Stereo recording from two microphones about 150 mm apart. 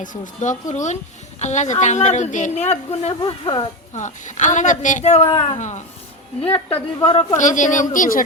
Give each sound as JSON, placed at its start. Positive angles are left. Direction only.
{"t": 0.0, "sound": "a woman's voice", "side_deg": 60}
{"t": 3.2, "sound": "speech", "side_deg": 30}
{"t": 3.9, "sound": "a woman's voice", "side_deg": 55}
{"t": 6.7, "sound": "speech", "side_deg": 40}
{"t": 7.3, "sound": "a woman's voice", "side_deg": 55}